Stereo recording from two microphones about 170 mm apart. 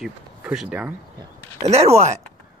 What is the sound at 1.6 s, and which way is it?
Speech, 40° right (ahead or behind).